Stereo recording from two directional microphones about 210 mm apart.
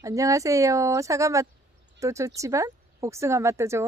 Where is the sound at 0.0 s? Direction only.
15° right (ahead or behind).